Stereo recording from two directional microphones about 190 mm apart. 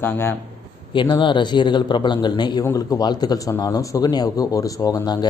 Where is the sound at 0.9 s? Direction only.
25° left (ahead or behind).